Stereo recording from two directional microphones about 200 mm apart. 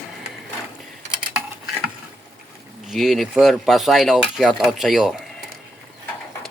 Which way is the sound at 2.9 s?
Centre (ahead or behind).